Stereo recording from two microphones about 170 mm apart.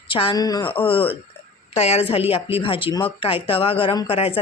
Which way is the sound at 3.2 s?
35° left (ahead or behind).